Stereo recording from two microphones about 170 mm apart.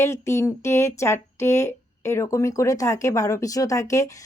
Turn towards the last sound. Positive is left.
turn(degrees=20)  # may be behind; listen again after turning